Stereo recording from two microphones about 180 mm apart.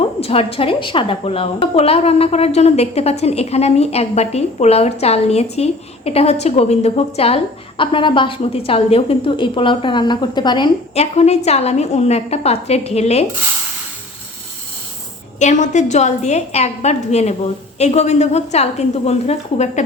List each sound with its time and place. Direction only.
0.0 s a woman's voice: 30° left (ahead or behind)
11.0 s a woman's voice: 35° left (ahead or behind)
15.4 s a woman's voice: 40° left (ahead or behind)